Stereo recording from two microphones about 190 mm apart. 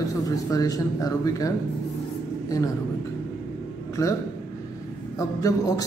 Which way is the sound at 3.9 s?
15° left (ahead or behind).